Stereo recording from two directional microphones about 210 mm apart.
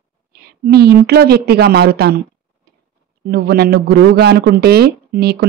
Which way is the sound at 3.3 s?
50° right (ahead or behind).